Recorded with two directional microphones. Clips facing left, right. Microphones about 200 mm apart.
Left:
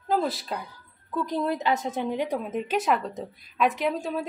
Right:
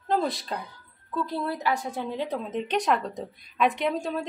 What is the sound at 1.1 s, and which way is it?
A woman's voice, 15° left (ahead or behind).